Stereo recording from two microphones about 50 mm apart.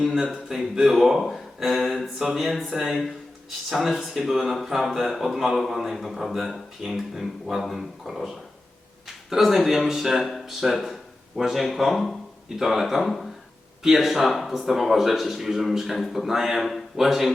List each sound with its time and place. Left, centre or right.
0.0 s speech: centre